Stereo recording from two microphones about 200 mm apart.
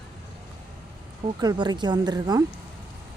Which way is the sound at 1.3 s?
20° right (ahead or behind).